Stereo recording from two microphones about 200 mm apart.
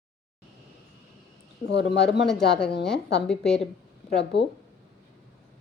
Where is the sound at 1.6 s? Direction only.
60° left (ahead or behind).